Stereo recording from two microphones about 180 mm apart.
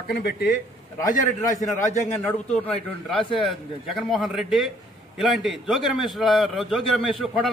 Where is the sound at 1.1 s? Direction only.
40° left (ahead or behind).